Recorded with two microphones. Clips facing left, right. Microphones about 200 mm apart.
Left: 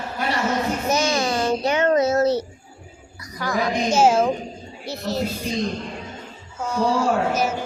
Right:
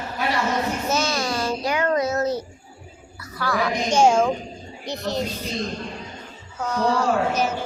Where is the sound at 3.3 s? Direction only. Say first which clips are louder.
Even; 20° left (ahead or behind).